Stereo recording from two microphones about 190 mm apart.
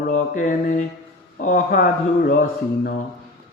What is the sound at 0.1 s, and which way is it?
Speech, 40° left (ahead or behind).